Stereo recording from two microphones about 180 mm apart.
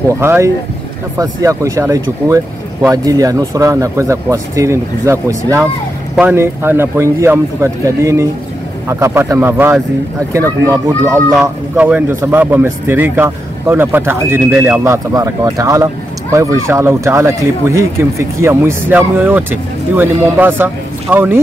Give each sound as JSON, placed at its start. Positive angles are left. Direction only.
{"t": 0.2, "sound": "speech", "side_deg": -15}
{"t": 11.3, "sound": "speech", "side_deg": -5}